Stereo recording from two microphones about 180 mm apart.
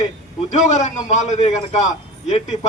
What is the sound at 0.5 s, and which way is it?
A man's voice, 40° left (ahead or behind).